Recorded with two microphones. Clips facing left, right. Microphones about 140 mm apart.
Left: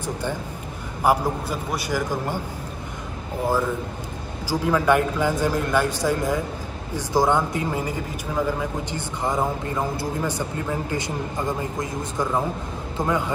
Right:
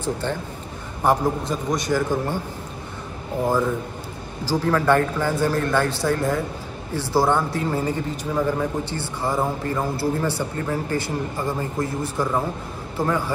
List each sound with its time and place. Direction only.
0.0 s speech: 10° left (ahead or behind)
4.5 s speech: 10° left (ahead or behind)
12.2 s speech: centre (ahead or behind)
12.9 s a man's voice: 20° left (ahead or behind)